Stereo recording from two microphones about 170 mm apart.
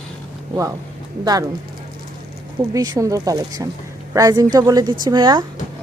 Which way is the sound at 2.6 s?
20° right (ahead or behind).